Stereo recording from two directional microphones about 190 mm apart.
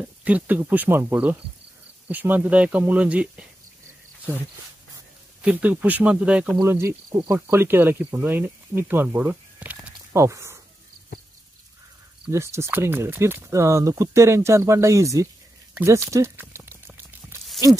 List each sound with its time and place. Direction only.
0.2 s speech: 10° right (ahead or behind)
5.4 s speech: 5° right (ahead or behind)
12.3 s speech: 15° right (ahead or behind)
15.7 s a sound: 15° right (ahead or behind)